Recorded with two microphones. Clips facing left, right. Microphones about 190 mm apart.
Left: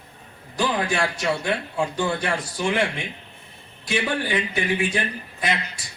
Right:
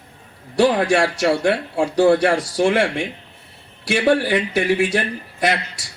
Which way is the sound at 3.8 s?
80° right.